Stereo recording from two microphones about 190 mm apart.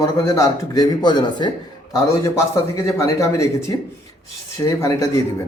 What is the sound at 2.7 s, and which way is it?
A man's voice, 15° left (ahead or behind).